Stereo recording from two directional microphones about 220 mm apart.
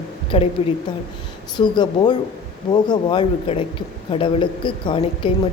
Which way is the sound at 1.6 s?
20° left (ahead or behind).